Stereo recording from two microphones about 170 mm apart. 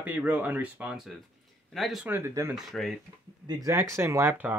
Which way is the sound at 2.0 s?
15° right (ahead or behind).